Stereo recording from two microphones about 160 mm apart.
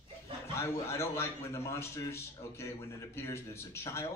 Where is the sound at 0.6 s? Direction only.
15° left (ahead or behind).